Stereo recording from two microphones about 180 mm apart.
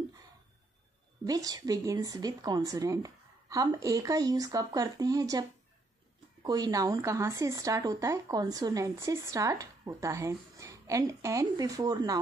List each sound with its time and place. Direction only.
1.2 s a woman's voice: 20° right (ahead or behind)
6.4 s speech: 20° right (ahead or behind)